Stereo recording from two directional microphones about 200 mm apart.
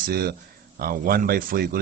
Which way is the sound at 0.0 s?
50° right (ahead or behind).